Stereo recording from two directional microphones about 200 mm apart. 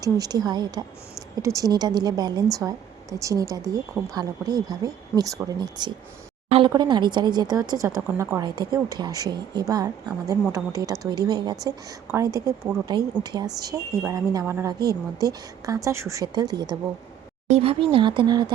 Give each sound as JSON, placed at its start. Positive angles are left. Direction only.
{"t": 0.0, "sound": "a woman's voice", "side_deg": -20}
{"t": 17.5, "sound": "a woman's voice", "side_deg": -30}